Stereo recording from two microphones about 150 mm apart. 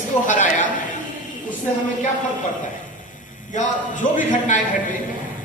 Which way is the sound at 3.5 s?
55° left (ahead or behind).